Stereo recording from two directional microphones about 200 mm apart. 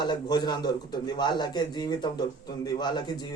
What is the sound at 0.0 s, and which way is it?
A man's voice, 20° left (ahead or behind).